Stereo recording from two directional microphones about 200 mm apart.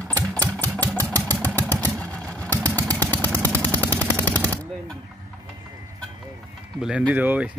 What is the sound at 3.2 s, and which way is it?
Machine gun, 10° left (ahead or behind).